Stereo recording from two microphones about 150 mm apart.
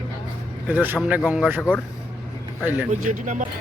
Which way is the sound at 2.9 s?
55° right (ahead or behind).